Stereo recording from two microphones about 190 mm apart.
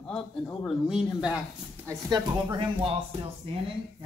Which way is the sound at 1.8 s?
20° right (ahead or behind).